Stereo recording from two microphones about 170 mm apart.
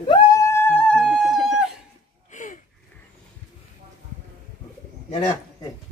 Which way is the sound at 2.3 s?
50° left (ahead or behind).